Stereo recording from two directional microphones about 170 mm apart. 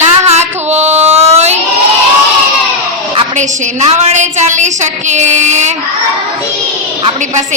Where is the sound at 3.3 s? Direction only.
40° right (ahead or behind).